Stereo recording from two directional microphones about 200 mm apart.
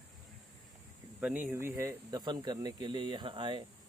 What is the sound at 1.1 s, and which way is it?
Speech, 5° right (ahead or behind).